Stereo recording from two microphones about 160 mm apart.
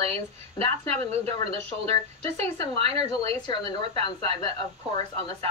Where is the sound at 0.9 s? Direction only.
40° right (ahead or behind).